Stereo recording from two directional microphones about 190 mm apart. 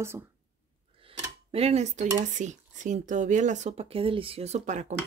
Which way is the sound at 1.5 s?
30° right (ahead or behind).